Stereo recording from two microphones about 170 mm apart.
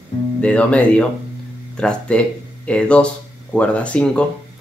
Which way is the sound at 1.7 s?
5° left (ahead or behind).